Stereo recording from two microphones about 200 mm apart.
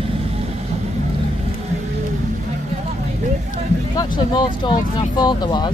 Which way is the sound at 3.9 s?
20° left (ahead or behind).